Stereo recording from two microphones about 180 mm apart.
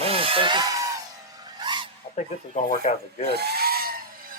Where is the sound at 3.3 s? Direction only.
60° right (ahead or behind).